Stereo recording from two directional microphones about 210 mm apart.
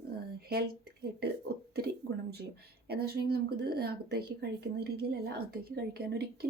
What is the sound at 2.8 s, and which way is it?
A woman's voice, 50° right (ahead or behind).